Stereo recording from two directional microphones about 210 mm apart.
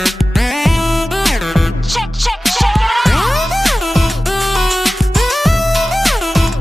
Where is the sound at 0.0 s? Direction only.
Centre (ahead or behind).